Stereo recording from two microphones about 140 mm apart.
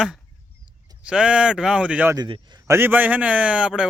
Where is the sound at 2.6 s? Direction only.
15° right (ahead or behind).